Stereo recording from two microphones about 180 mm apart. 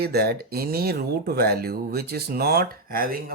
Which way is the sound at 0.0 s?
60° right (ahead or behind).